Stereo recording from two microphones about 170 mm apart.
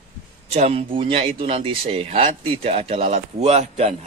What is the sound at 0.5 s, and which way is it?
Speech, 35° right (ahead or behind).